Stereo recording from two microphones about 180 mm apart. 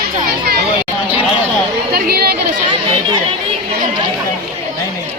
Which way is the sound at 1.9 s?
60° right (ahead or behind).